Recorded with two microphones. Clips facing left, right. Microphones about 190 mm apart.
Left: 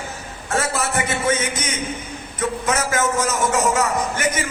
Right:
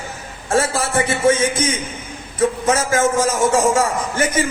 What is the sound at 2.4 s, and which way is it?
A man's voice, 30° right (ahead or behind).